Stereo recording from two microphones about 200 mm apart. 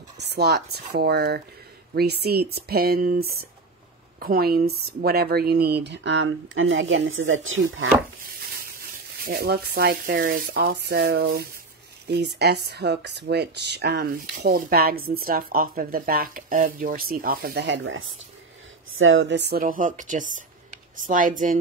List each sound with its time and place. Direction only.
0.2 s a sound: 55° right (ahead or behind)
0.7 s speech: 55° right (ahead or behind)
5.9 s speech: 65° right (ahead or behind)
9.2 s speech: 50° right (ahead or behind)
19.6 s speech: 40° right (ahead or behind)